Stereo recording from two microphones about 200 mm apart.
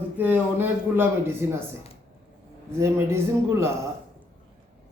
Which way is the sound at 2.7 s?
15° right (ahead or behind).